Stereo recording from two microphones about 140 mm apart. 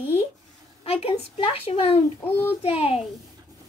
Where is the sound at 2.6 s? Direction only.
45° left (ahead or behind).